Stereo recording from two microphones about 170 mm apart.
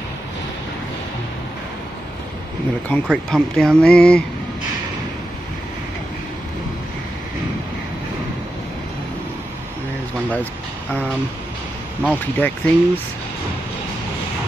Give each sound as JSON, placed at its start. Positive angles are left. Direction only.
{"t": 2.9, "sound": "speech", "side_deg": 5}
{"t": 12.0, "sound": "speech", "side_deg": 10}